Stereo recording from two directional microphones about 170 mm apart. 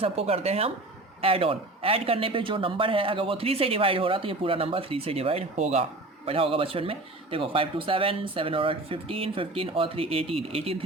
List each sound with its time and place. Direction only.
0.0 s speech: 35° right (ahead or behind)